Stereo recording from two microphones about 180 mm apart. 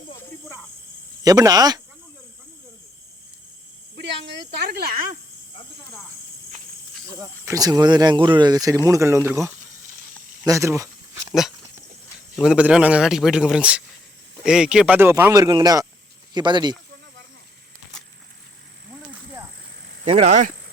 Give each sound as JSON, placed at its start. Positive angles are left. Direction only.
{"t": 1.2, "sound": "speech", "side_deg": -20}
{"t": 3.9, "sound": "snake", "side_deg": -75}
{"t": 7.1, "sound": "speech", "side_deg": -20}
{"t": 12.4, "sound": "speech", "side_deg": -5}
{"t": 20.1, "sound": "speech", "side_deg": -35}